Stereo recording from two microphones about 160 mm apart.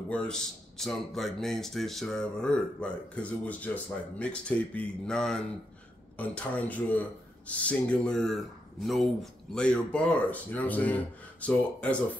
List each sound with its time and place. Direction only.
0.1 s a man's voice: 5° left (ahead or behind)